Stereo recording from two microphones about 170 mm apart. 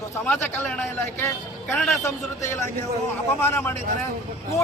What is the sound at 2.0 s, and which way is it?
A man's voice, 15° left (ahead or behind).